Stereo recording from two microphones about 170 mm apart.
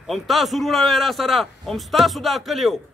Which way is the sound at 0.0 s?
Centre (ahead or behind).